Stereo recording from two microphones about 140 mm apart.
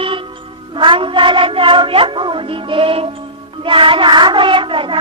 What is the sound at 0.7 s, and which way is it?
Speech, 35° right (ahead or behind).